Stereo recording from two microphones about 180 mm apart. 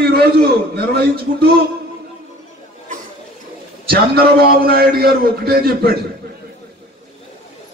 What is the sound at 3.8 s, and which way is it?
A man's voice, 60° right (ahead or behind).